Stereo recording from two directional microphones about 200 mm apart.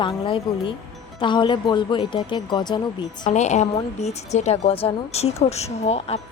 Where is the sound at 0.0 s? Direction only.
25° left (ahead or behind).